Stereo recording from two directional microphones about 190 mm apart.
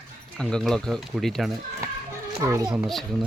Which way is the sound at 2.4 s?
15° right (ahead or behind).